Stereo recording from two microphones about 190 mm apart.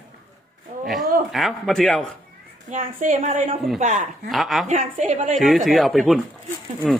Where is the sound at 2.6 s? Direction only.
40° right (ahead or behind).